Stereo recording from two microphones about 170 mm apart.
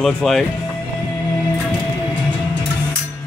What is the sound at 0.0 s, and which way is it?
Speech, centre (ahead or behind).